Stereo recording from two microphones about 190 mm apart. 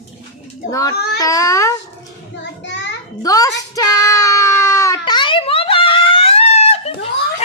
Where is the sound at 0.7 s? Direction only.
20° left (ahead or behind).